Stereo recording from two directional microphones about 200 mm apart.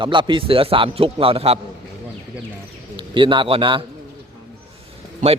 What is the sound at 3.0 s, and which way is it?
Speech, 25° right (ahead or behind).